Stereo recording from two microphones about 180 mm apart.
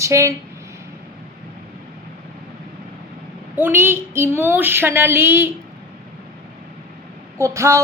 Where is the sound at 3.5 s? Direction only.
10° right (ahead or behind).